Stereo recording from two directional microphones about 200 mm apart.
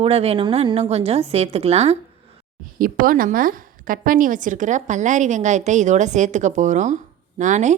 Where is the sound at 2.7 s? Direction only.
45° right (ahead or behind).